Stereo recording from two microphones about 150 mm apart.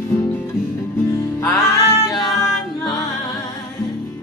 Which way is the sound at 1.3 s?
20° left (ahead or behind).